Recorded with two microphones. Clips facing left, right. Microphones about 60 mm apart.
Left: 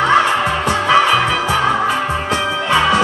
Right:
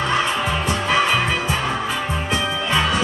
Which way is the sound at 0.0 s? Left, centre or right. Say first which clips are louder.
Left 7 dB; left.